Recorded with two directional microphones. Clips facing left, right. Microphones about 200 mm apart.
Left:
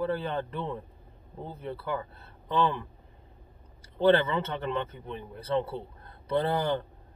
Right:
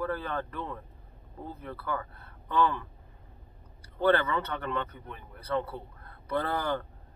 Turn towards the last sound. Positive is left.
turn(degrees=20)  # may be behind; listen again after turning